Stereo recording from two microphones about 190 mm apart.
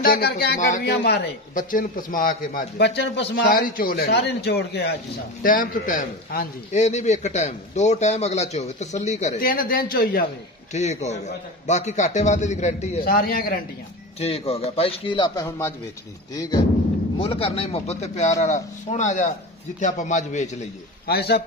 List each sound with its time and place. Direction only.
0.0 s speech: 55° left (ahead or behind)
0.8 s a man's voice: 60° left (ahead or behind)
5.4 s a man's voice: 45° left (ahead or behind)
10.7 s a man's voice: 35° left (ahead or behind)
13.0 s a man's voice: 50° left (ahead or behind)
14.2 s speech: 30° left (ahead or behind)
17.2 s a man's voice: 30° left (ahead or behind)
21.1 s speech: 55° left (ahead or behind)